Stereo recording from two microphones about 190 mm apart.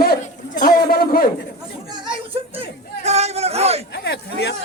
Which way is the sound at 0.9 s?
50° left (ahead or behind).